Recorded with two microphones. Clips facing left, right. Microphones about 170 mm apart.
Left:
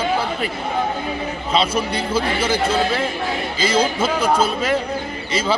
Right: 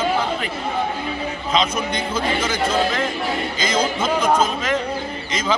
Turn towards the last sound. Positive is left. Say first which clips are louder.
# even
turn(degrees=10)  # may be behind; listen again after turning